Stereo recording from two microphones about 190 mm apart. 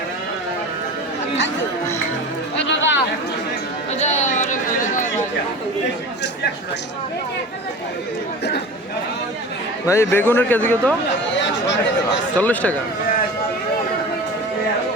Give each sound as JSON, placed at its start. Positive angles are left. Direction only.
{"t": 2.6, "sound": "a sound", "side_deg": 70}
{"t": 3.9, "sound": "chatter", "side_deg": 40}
{"t": 9.8, "sound": "a man's voice", "side_deg": 15}
{"t": 12.4, "sound": "a man's voice", "side_deg": 10}